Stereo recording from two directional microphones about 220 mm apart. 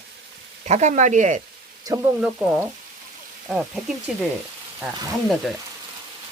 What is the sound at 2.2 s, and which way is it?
Speech, 5° right (ahead or behind).